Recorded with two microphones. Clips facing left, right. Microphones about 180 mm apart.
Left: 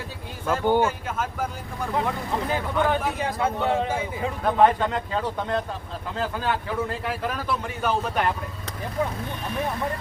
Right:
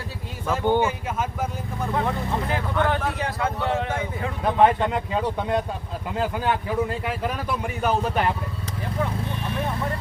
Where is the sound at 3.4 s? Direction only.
25° left (ahead or behind).